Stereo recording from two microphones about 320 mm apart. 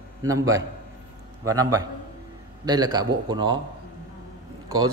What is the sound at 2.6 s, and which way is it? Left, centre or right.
Speech, centre.